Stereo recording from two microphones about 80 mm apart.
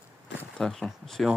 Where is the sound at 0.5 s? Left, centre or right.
Centre.